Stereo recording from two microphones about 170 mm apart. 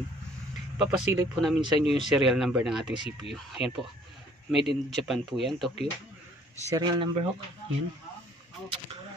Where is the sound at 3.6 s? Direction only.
35° left (ahead or behind).